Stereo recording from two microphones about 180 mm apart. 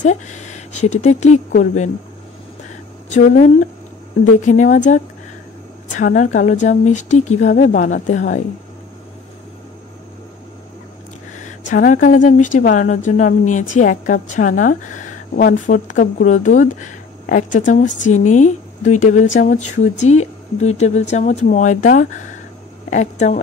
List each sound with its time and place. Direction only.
0.0 s speech: 40° left (ahead or behind)
3.1 s a woman's voice: 45° left (ahead or behind)
11.4 s a woman's voice: 45° left (ahead or behind)